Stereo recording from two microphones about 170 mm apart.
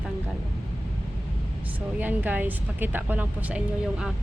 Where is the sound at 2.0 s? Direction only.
10° right (ahead or behind).